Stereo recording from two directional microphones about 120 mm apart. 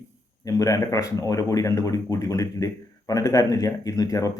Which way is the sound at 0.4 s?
25° left (ahead or behind).